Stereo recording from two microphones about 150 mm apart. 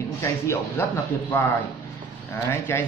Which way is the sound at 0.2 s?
15° left (ahead or behind).